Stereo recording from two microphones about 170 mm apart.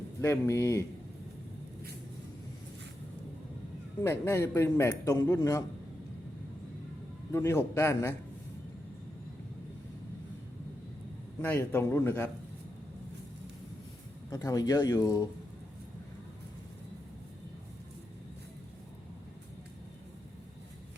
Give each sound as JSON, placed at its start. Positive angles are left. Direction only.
{"t": 0.2, "sound": "a man's voice", "side_deg": 15}
{"t": 4.0, "sound": "a man's voice", "side_deg": 15}
{"t": 7.3, "sound": "a man's voice", "side_deg": 15}
{"t": 11.4, "sound": "a man's voice", "side_deg": 10}
{"t": 14.3, "sound": "speech", "side_deg": 20}